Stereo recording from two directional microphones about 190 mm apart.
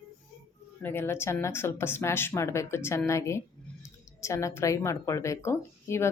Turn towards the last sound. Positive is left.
turn(degrees=15)  # may be behind; listen again after turning